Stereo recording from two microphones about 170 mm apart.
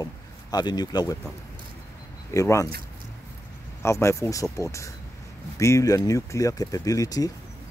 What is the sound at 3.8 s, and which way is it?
Speech, 15° left (ahead or behind).